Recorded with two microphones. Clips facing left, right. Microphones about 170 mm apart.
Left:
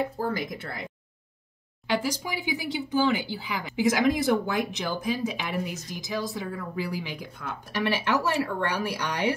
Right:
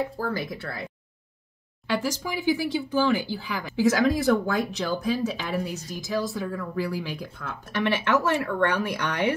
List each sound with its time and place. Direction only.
0.2 s speech: 20° left (ahead or behind)
1.9 s speech: 15° left (ahead or behind)